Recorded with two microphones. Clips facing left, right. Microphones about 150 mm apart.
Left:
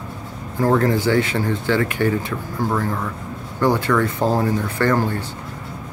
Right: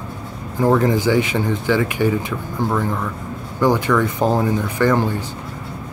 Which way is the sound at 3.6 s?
15° right (ahead or behind).